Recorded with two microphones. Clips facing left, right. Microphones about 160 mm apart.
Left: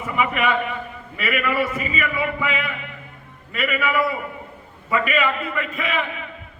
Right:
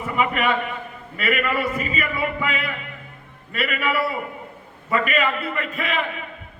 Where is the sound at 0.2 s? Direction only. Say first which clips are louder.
Even; 40° right (ahead or behind).